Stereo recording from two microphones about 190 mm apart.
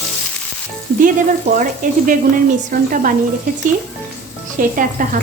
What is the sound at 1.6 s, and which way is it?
Speech, 45° right (ahead or behind).